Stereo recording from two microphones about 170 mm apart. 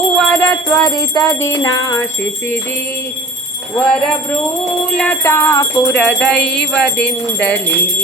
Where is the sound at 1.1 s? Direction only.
20° left (ahead or behind).